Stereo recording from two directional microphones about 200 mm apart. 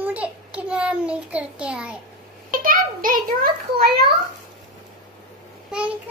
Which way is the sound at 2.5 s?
45° right (ahead or behind).